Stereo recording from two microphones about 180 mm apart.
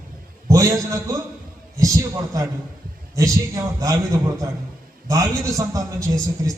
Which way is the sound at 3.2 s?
20° right (ahead or behind).